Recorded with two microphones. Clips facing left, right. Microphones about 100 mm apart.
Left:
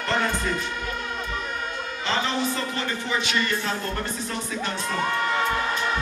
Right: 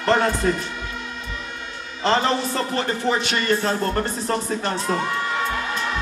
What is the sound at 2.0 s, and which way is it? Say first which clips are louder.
Speech: right 6 dB; 40° right (ahead or behind).